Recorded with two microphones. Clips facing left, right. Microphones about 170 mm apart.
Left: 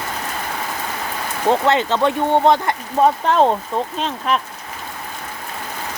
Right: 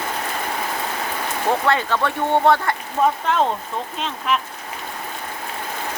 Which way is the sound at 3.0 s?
30° left (ahead or behind).